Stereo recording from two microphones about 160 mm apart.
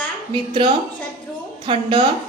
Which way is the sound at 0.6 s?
35° right (ahead or behind).